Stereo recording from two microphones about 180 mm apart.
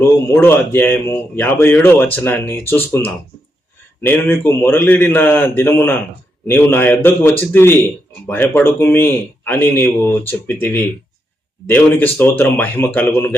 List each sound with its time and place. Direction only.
0.3 s a man's voice: 10° left (ahead or behind)